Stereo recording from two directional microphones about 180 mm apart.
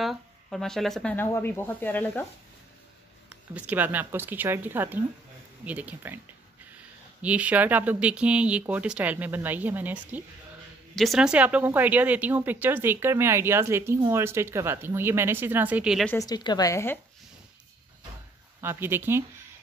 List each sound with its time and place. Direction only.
0.0 s speech: centre (ahead or behind)
3.3 s speech: 10° right (ahead or behind)
16.1 s a woman's voice: 20° left (ahead or behind)
18.6 s speech: 10° right (ahead or behind)